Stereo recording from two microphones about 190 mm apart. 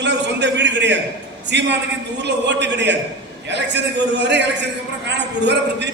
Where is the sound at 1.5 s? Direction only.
65° right (ahead or behind).